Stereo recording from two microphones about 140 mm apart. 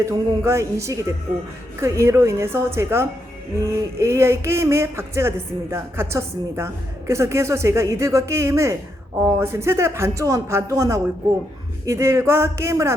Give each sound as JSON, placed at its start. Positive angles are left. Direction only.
{"t": 0.0, "sound": "speech", "side_deg": -20}